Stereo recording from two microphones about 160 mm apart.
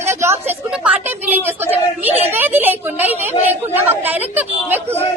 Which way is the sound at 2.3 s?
15° right (ahead or behind).